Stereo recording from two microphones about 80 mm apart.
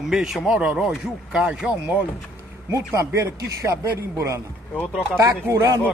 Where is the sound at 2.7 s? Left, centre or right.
Right.